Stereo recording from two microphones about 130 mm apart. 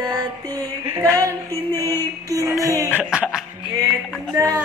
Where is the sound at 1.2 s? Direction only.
25° right (ahead or behind).